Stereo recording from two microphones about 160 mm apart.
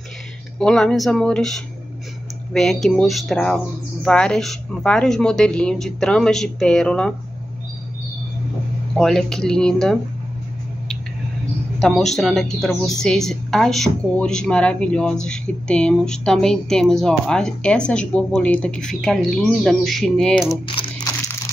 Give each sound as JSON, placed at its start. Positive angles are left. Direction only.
{"t": 0.6, "sound": "a woman's voice", "side_deg": 5}
{"t": 8.9, "sound": "a woman's voice", "side_deg": 5}
{"t": 11.8, "sound": "a woman's voice", "side_deg": 5}
{"t": 20.6, "sound": "crumpling", "side_deg": 30}